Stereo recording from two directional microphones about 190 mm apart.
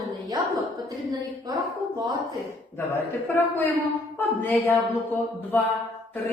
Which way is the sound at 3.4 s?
10° left (ahead or behind).